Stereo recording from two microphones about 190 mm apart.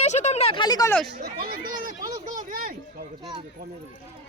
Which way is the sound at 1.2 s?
50° right (ahead or behind).